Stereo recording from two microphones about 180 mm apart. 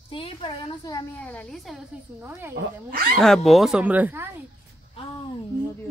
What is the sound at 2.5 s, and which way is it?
Speech, 55° right (ahead or behind).